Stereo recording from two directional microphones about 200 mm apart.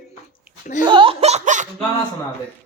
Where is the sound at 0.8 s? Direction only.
25° right (ahead or behind).